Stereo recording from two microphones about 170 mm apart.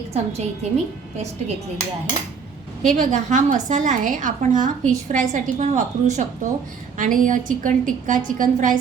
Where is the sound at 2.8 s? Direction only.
50° right (ahead or behind).